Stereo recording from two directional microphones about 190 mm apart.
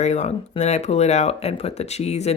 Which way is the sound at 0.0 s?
35° left (ahead or behind).